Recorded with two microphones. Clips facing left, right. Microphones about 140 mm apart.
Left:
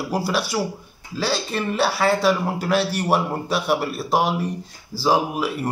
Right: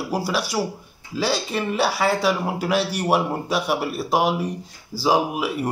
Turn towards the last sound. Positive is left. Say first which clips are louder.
# even
turn(degrees=-10)  # may be behind; listen again after turning